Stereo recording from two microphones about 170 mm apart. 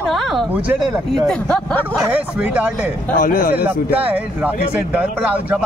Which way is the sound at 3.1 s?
55° left (ahead or behind).